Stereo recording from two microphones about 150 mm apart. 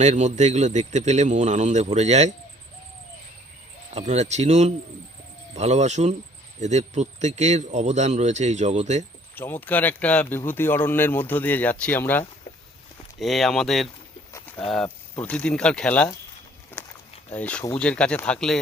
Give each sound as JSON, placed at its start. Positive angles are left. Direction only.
{"t": 0.0, "sound": "speech", "side_deg": -50}
{"t": 3.9, "sound": "speech", "side_deg": -45}
{"t": 9.3, "sound": "speech", "side_deg": 15}
{"t": 13.1, "sound": "speech", "side_deg": 0}
{"t": 14.3, "sound": "bird", "side_deg": 10}
{"t": 14.8, "sound": "speech", "side_deg": 10}
{"t": 17.3, "sound": "speech", "side_deg": 10}